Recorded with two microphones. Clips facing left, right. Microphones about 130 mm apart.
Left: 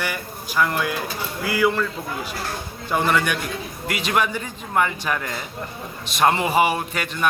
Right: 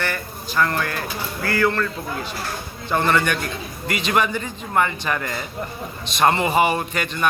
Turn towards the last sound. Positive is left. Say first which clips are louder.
# right 1 dB
turn(degrees=5)  # may be behind; listen again after turning